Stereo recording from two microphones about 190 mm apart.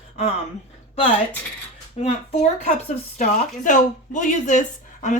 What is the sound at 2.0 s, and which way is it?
Speech, 35° left (ahead or behind).